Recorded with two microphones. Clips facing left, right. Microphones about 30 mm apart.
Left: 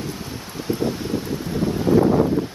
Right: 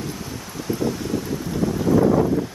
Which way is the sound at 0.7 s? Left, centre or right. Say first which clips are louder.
Left 1 dB; left.